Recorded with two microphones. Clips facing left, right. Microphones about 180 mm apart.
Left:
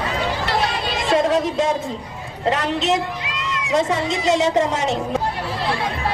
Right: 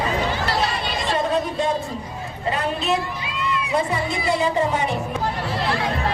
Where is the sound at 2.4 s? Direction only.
90° left.